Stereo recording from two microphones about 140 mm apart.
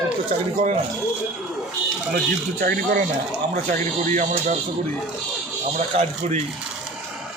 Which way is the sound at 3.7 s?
60° right (ahead or behind).